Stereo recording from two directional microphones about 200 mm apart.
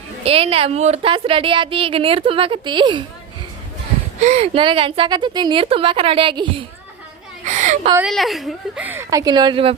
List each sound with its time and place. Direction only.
0.3 s a woman's voice: 30° right (ahead or behind)
4.2 s a woman's voice: 35° right (ahead or behind)
7.4 s a sound: 35° right (ahead or behind)
7.9 s a woman's voice: centre (ahead or behind); by 9.7 s 25° right (ahead or behind)